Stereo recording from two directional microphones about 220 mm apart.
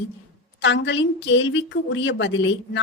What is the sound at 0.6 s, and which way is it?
A woman's voice, 55° left (ahead or behind).